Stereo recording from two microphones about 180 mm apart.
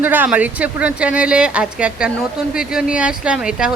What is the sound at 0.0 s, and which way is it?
Speech, 10° right (ahead or behind).